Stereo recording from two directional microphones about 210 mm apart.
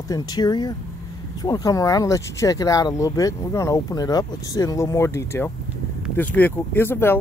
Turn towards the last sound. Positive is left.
turn(degrees=10)  # may be behind; listen again after turning